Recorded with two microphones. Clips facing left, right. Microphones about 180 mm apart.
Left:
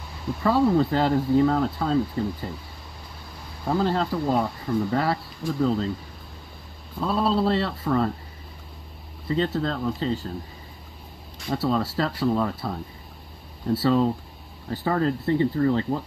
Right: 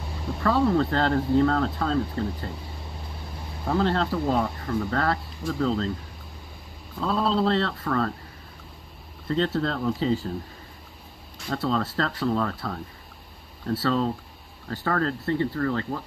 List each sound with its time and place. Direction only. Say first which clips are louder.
0.4 s speech: left 2 dB; 10° left (ahead or behind)
3.6 s speech: even; 5° left (ahead or behind)
7.0 s speech: left 1 dB; 10° left (ahead or behind)
9.3 s speech: even; 5° left (ahead or behind)
11.4 s speech: left 2 dB; 10° left (ahead or behind)